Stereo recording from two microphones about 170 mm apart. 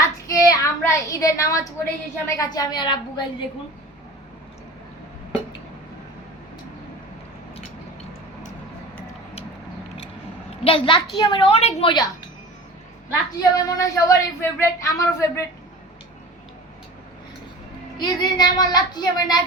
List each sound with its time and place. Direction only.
0.3 s a child's voice: 20° left (ahead or behind)
10.6 s a child's voice: 30° left (ahead or behind)
13.4 s a woman's voice: 20° left (ahead or behind)
17.9 s a woman's voice: 25° left (ahead or behind)